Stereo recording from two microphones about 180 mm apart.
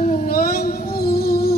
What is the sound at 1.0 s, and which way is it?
Music, 55° left (ahead or behind).